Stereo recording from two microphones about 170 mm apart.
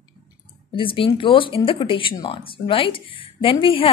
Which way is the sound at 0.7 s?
30° left (ahead or behind).